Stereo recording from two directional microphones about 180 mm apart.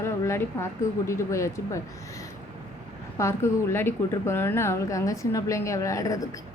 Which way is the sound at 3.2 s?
15° left (ahead or behind).